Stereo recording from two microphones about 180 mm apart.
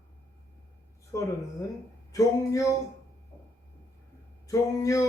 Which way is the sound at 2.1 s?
20° left (ahead or behind).